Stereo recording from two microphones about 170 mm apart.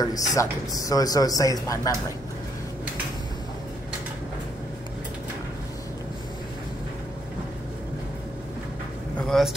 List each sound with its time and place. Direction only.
0.0 s a man's voice: 20° left (ahead or behind)
9.3 s vehicle: centre (ahead or behind)